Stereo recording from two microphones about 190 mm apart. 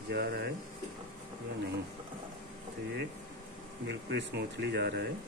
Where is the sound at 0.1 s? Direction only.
55° right (ahead or behind).